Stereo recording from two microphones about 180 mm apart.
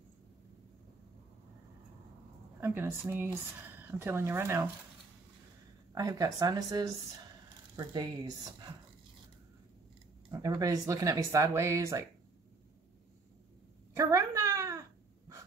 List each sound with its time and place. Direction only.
2.6 s speech: 10° right (ahead or behind)
5.9 s speech: 20° right (ahead or behind)
10.3 s speech: 20° right (ahead or behind)
13.9 s a sound: 15° right (ahead or behind)